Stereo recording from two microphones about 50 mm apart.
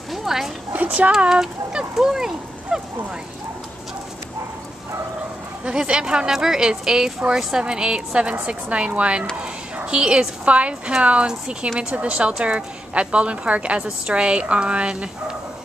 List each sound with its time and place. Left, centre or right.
0.1 s a sound: centre
1.3 s speech: centre
5.7 s a woman's voice: centre